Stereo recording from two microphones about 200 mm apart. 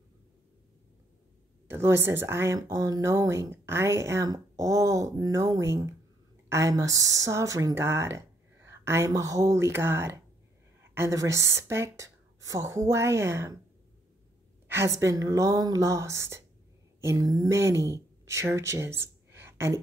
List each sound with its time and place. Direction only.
1.7 s speech: 10° right (ahead or behind)
14.7 s speech: 15° right (ahead or behind)